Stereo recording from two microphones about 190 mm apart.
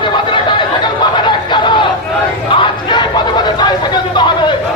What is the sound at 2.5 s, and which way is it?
Chatter, 25° left (ahead or behind).